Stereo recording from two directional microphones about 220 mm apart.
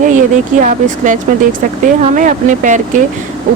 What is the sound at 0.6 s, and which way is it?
A woman's voice, 35° right (ahead or behind).